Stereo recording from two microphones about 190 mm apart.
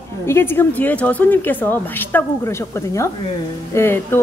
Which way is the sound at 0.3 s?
10° left (ahead or behind).